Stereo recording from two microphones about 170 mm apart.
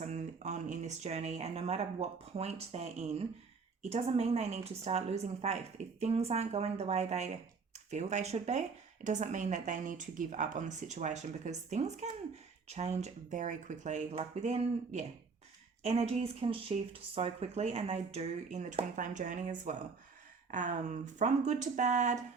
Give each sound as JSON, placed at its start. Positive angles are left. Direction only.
{"t": 0.0, "sound": "a woman's voice", "side_deg": -45}